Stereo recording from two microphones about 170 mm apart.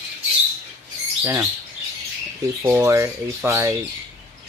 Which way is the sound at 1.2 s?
10° right (ahead or behind).